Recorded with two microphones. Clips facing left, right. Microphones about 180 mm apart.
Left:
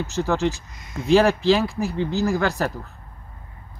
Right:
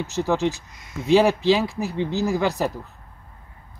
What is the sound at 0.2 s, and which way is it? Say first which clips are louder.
Speech: even; 10° right (ahead or behind).